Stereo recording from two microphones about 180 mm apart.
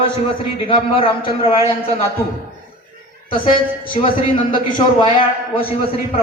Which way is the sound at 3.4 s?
30° left (ahead or behind).